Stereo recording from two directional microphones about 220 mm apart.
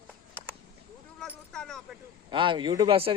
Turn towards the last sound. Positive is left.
turn(degrees=-25)  # may be behind; listen again after turning